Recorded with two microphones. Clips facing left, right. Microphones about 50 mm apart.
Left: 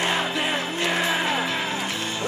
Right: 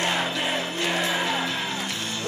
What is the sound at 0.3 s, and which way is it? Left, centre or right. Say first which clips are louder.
Music: left 2 dB; centre.